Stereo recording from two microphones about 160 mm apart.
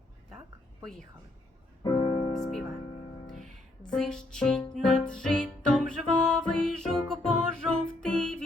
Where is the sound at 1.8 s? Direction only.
35° left (ahead or behind).